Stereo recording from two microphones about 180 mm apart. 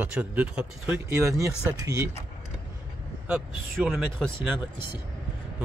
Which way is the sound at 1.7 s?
20° right (ahead or behind).